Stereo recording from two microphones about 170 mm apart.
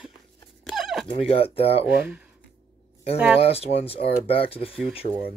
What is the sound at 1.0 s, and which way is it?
Speech, 35° left (ahead or behind).